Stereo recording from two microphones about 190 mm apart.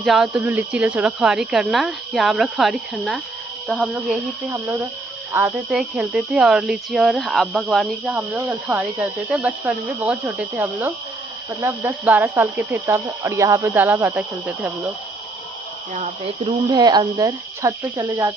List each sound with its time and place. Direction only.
0.0 s speech: centre (ahead or behind)
8.2 s speech: 15° right (ahead or behind)
9.3 s speech: 5° right (ahead or behind)
16.4 s speech: 20° right (ahead or behind)